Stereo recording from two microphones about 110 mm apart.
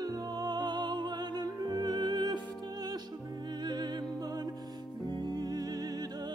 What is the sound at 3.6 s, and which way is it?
Music, 40° right (ahead or behind).